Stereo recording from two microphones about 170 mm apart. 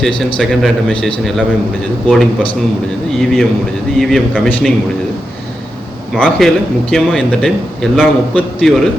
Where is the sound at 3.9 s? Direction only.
Centre (ahead or behind).